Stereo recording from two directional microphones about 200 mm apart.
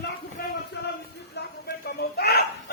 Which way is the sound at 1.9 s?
55° left (ahead or behind).